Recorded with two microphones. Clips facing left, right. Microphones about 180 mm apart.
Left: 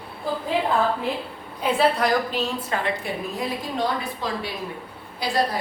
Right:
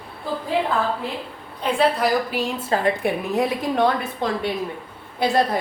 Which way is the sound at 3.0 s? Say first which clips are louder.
Right 7 dB; 60° right (ahead or behind).